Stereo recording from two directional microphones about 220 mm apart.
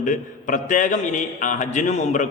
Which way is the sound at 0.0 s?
35° left (ahead or behind).